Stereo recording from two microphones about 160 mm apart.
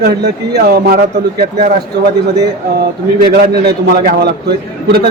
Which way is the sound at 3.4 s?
70° right (ahead or behind).